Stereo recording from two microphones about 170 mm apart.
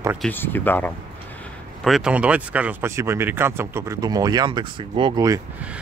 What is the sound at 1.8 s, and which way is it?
Speech, 5° right (ahead or behind).